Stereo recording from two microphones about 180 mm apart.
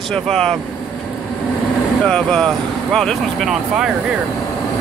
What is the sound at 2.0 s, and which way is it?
Speech, 5° left (ahead or behind).